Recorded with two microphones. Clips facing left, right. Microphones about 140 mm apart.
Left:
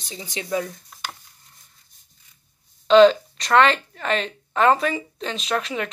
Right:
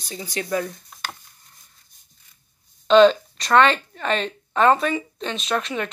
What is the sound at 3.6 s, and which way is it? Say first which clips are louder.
Speech: even; 30° left (ahead or behind).